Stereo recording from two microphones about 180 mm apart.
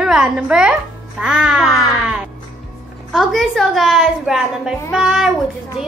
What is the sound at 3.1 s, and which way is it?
A woman's voice, centre (ahead or behind).